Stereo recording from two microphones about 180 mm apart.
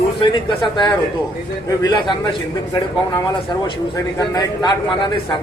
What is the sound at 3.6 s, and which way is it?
A man's voice, 25° left (ahead or behind).